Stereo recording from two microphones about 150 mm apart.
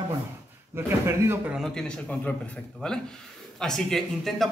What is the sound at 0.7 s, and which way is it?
Speech, 15° right (ahead or behind).